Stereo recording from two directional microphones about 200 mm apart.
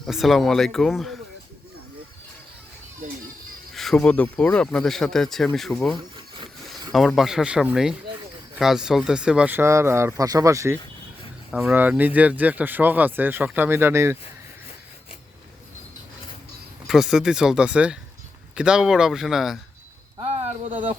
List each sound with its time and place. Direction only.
0.0 s speech: centre (ahead or behind)
3.7 s speech: centre (ahead or behind)
16.8 s speech: centre (ahead or behind)
20.2 s a sound: 35° right (ahead or behind)